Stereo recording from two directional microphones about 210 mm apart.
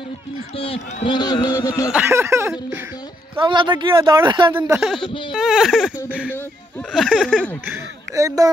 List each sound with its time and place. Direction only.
0.6 s speech: 25° left (ahead or behind)
1.9 s speech: 10° right (ahead or behind)
3.3 s speech: 25° right (ahead or behind)
4.6 s speech: 5° right (ahead or behind)
7.6 s speech: 15° right (ahead or behind)